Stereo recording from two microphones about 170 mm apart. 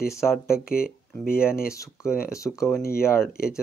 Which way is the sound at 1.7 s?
15° left (ahead or behind).